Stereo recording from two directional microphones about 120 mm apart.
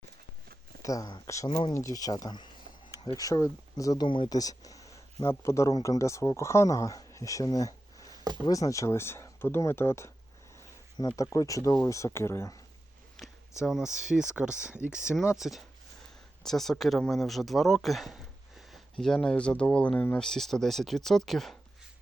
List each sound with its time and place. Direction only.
0.8 s speech: 30° left (ahead or behind)
4.0 s speech: 45° left (ahead or behind)
4.4 s speech: 30° left (ahead or behind)
13.6 s speech: 5° right (ahead or behind)